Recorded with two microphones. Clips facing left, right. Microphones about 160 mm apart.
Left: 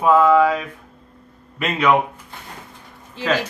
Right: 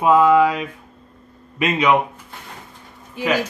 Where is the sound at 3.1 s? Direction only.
10° right (ahead or behind).